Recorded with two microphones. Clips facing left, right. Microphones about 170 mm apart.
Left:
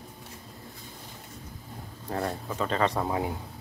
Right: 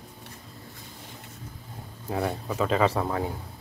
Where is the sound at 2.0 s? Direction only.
5° right (ahead or behind).